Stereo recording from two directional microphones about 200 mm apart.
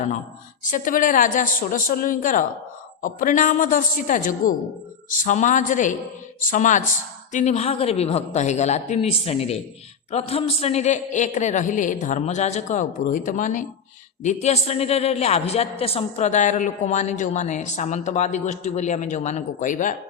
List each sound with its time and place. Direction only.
0.6 s a man's voice: 40° left (ahead or behind)